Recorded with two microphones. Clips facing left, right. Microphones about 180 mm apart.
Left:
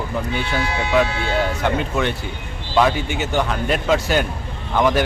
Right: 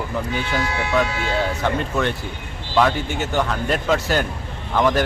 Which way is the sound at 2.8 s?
5° left (ahead or behind).